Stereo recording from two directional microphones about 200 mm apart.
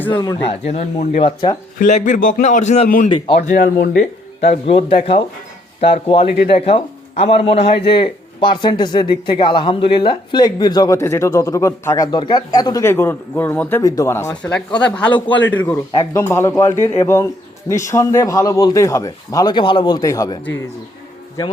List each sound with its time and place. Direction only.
0.1 s speech: 20° left (ahead or behind)
1.8 s a man's voice: 35° left (ahead or behind)
4.4 s a man's voice: 30° left (ahead or behind)
6.2 s speech: 50° left (ahead or behind)
6.5 s speech: 30° left (ahead or behind)